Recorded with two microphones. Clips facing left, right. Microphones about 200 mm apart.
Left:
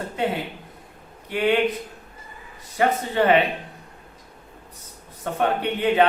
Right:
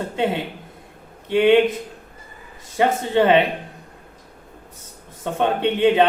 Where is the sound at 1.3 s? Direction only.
25° right (ahead or behind).